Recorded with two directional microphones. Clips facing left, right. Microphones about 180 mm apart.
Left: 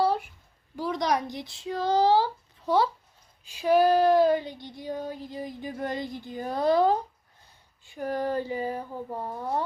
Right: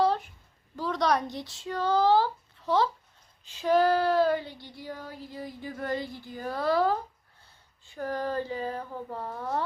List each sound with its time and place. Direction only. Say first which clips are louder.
0.0 s a sound: even; 10° left (ahead or behind)
0.8 s speech: even; 15° left (ahead or behind)
3.4 s child singing: left 2 dB; 10° left (ahead or behind)
7.9 s speech: left 3 dB; 15° left (ahead or behind)